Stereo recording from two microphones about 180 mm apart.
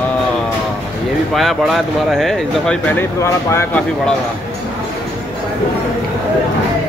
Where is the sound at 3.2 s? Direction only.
15° left (ahead or behind).